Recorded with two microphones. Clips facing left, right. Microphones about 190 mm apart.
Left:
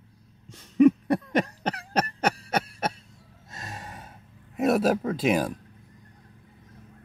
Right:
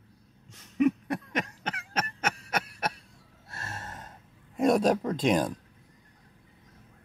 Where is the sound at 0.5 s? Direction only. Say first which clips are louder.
Left 7 dB; 35° left (ahead or behind).